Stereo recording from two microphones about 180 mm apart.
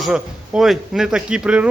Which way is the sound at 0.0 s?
Centre (ahead or behind).